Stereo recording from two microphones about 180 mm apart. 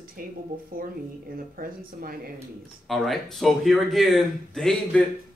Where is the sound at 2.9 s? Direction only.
Centre (ahead or behind).